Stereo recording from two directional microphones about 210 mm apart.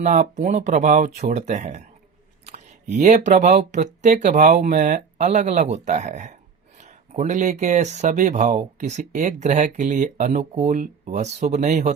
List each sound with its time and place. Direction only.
0.0 s speech: 35° right (ahead or behind)
2.5 s a sound: 35° right (ahead or behind)
3.2 s speech: 35° right (ahead or behind)